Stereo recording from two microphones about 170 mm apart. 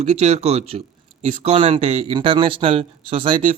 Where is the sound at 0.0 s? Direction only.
40° right (ahead or behind).